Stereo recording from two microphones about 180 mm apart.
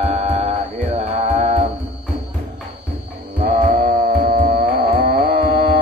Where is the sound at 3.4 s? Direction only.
45° right (ahead or behind).